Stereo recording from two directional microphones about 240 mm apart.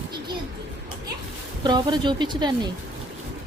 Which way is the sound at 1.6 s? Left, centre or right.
Centre.